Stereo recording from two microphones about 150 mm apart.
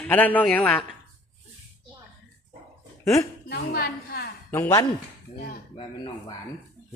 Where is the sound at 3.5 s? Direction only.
90° left.